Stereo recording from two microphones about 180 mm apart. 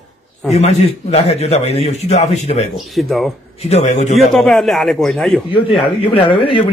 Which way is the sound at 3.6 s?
35° left (ahead or behind).